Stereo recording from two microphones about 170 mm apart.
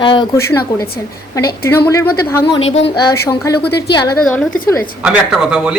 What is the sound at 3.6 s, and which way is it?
Speech, 70° left (ahead or behind).